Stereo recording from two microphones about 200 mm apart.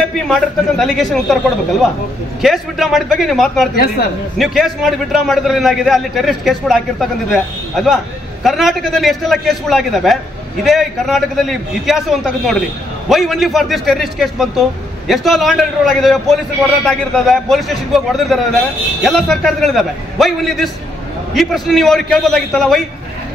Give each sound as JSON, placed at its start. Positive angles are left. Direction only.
{"t": 0.3, "sound": "a man's voice", "side_deg": 0}
{"t": 2.4, "sound": "a man's voice", "side_deg": 0}
{"t": 3.7, "sound": "a man's voice", "side_deg": 50}
{"t": 4.4, "sound": "a man's voice", "side_deg": 0}